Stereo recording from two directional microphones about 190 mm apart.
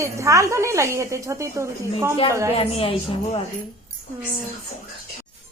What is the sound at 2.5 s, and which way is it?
Speech, 30° left (ahead or behind).